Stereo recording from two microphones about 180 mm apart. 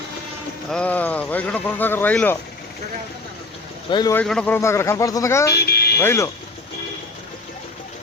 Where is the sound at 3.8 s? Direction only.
25° left (ahead or behind).